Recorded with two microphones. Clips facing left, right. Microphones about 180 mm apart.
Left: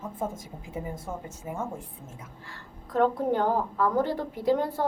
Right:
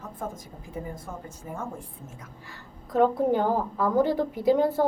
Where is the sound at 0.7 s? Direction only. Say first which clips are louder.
Left 1 dB; 25° left (ahead or behind).